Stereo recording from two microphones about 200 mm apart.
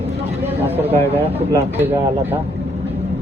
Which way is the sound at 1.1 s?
10° right (ahead or behind).